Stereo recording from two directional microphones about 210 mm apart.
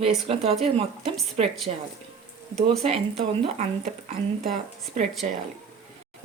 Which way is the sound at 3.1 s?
30° right (ahead or behind).